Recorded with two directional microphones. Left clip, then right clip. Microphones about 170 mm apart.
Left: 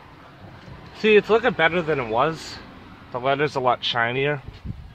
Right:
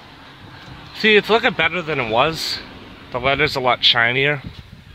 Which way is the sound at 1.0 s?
10° right (ahead or behind).